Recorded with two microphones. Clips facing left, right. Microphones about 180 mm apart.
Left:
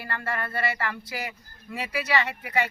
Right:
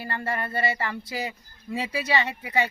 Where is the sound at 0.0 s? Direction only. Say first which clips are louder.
Right 2 dB; 25° right (ahead or behind).